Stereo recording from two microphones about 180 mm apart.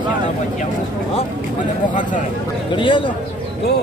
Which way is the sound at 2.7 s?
25° left (ahead or behind).